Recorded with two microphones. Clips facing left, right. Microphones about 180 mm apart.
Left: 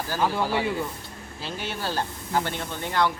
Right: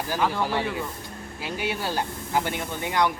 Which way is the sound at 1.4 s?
15° right (ahead or behind).